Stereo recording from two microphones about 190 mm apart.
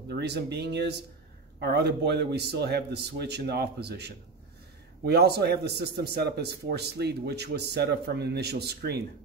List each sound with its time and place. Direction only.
0.1 s a man's voice: 60° right (ahead or behind)